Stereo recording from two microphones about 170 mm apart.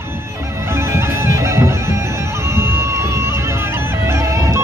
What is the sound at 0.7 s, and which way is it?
Music, 15° right (ahead or behind).